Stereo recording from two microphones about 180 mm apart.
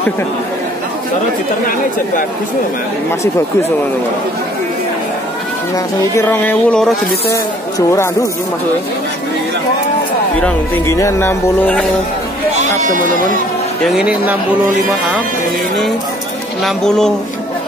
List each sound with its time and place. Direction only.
6.1 s speech: 10° left (ahead or behind)
10.4 s speech: 15° left (ahead or behind)
12.5 s sheep: 40° right (ahead or behind)
13.9 s speech: 5° right (ahead or behind)
16.6 s speech: 5° left (ahead or behind)